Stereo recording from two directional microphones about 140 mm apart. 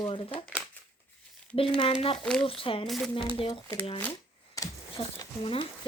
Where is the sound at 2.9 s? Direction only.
Centre (ahead or behind).